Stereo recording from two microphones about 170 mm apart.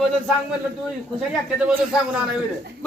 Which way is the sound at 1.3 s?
5° right (ahead or behind).